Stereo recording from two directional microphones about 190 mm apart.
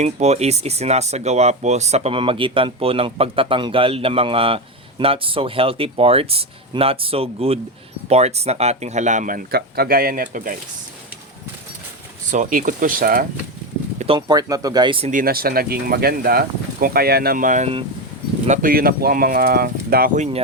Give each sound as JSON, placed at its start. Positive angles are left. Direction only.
{"t": 0.0, "sound": "speech", "side_deg": -35}
{"t": 12.3, "sound": "speech", "side_deg": -45}
{"t": 14.0, "sound": "speech", "side_deg": -25}
{"t": 15.1, "sound": "speech", "side_deg": -50}